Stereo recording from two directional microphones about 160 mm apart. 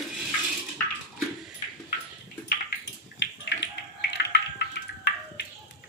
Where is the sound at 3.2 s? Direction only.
90° left.